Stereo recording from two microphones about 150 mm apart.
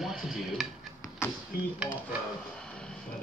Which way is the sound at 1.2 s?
15° left (ahead or behind).